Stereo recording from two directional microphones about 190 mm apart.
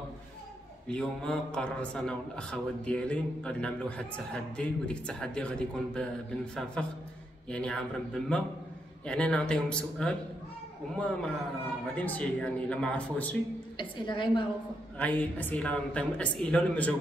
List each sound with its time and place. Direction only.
0.8 s a man's voice: 5° left (ahead or behind)
11.9 s speech: 5° left (ahead or behind)
13.7 s a woman's voice: 25° left (ahead or behind)
15.0 s speech: 10° left (ahead or behind)